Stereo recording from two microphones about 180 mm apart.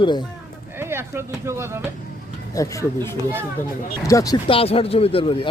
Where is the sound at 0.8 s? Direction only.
15° right (ahead or behind).